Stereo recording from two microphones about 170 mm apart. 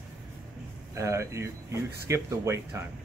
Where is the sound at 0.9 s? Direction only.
15° right (ahead or behind).